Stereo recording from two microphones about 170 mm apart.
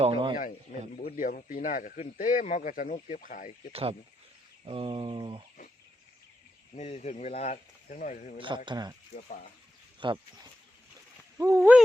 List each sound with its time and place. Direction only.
0.0 s speech: 30° right (ahead or behind)
0.9 s speech: 50° left (ahead or behind)
3.7 s a sound: 35° right (ahead or behind)
6.7 s speech: 40° left (ahead or behind)
8.4 s speech: 30° right (ahead or behind)
10.0 s speech: 30° right (ahead or behind)
11.3 s speech: 20° right (ahead or behind)